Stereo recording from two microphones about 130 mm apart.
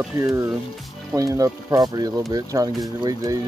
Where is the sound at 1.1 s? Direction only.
25° right (ahead or behind).